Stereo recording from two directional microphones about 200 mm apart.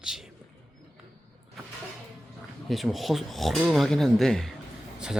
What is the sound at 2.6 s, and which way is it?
A man's voice, centre (ahead or behind).